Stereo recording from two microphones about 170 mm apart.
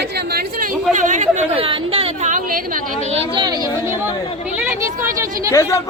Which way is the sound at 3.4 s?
25° right (ahead or behind).